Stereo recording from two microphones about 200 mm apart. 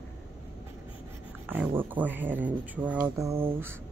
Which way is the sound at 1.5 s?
10° right (ahead or behind).